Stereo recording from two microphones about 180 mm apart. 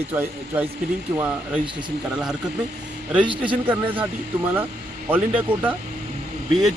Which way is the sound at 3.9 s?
10° right (ahead or behind).